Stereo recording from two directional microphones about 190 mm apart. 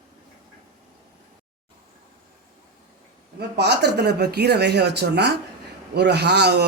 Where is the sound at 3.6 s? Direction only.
60° right (ahead or behind).